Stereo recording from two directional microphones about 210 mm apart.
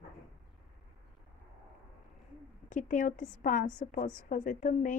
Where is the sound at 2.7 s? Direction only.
35° left (ahead or behind).